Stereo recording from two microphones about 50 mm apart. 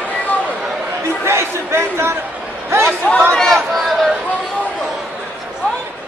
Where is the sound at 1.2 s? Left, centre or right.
Right.